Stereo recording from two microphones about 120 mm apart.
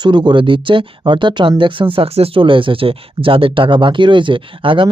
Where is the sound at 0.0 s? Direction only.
40° right (ahead or behind).